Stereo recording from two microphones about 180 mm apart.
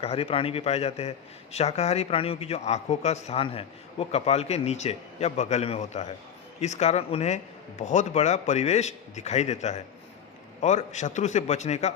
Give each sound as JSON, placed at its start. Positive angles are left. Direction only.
{"t": 0.0, "sound": "speech", "side_deg": 35}